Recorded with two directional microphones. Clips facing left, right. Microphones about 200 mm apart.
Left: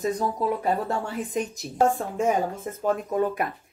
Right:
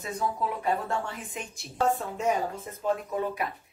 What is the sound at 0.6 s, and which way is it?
Speech, 40° left (ahead or behind).